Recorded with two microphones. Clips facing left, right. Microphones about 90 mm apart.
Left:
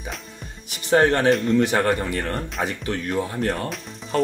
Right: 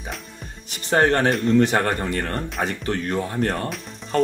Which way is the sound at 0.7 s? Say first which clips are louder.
Left 1 dB; 35° right (ahead or behind).